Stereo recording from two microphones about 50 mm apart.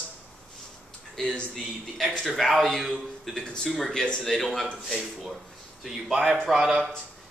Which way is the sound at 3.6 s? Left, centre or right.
Centre.